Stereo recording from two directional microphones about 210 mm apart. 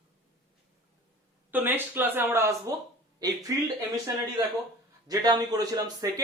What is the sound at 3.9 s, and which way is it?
Speech, 15° right (ahead or behind).